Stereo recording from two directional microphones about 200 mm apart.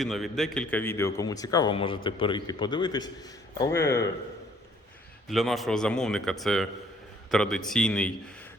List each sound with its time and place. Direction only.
0.0 s a man's voice: centre (ahead or behind)
5.3 s speech: centre (ahead or behind)